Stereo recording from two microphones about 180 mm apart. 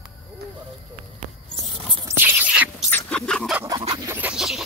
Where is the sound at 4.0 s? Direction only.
10° right (ahead or behind).